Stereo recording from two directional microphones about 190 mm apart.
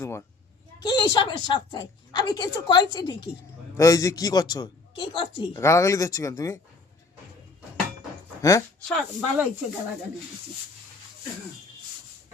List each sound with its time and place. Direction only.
0.0 s a woman's voice: 15° left (ahead or behind)
8.4 s a woman's voice: 15° left (ahead or behind)
8.8 s speech: centre (ahead or behind)